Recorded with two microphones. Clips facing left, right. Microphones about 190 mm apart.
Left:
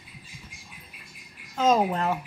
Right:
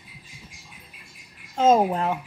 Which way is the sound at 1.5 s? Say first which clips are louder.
Right 4 dB; 25° right (ahead or behind).